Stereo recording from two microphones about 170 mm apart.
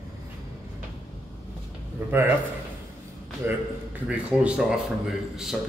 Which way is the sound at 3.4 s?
10° right (ahead or behind).